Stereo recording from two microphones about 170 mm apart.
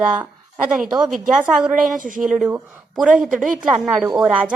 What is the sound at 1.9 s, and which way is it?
Speech, 50° right (ahead or behind).